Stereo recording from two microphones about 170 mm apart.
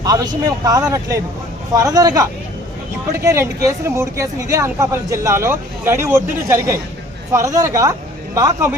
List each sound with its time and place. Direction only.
0.0 s speech: 20° right (ahead or behind)